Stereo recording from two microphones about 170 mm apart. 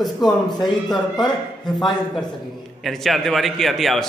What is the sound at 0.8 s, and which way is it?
Speech, 25° left (ahead or behind).